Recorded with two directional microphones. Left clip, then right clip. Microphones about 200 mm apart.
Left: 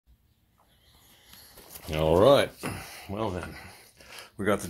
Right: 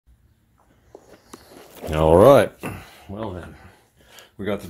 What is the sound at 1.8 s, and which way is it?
Speech, 40° right (ahead or behind).